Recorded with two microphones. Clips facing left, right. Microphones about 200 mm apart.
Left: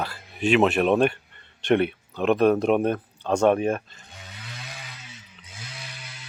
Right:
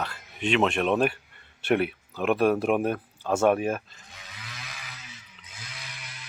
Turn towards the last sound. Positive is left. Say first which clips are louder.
# left 3 dB
turn(degrees=30)  # may be behind; listen again after turning